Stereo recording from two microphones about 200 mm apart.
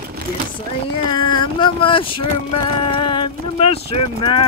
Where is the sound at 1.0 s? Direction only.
25° left (ahead or behind).